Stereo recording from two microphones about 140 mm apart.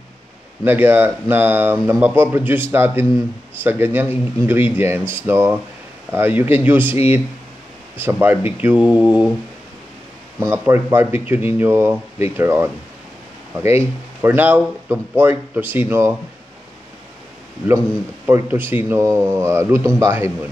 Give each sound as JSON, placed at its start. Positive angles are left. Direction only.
{"t": 0.7, "sound": "speech", "side_deg": -15}
{"t": 8.0, "sound": "speech", "side_deg": -15}
{"t": 10.4, "sound": "speech", "side_deg": -15}
{"t": 18.2, "sound": "speech", "side_deg": -15}